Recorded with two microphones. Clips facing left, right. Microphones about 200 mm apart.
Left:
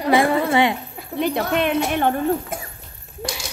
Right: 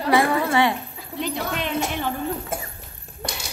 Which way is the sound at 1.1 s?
60° left (ahead or behind).